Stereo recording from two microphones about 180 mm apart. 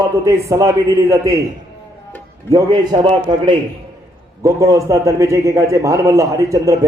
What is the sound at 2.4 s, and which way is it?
A man's voice, 20° right (ahead or behind).